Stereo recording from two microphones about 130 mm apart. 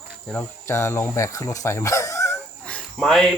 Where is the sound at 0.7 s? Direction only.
20° left (ahead or behind).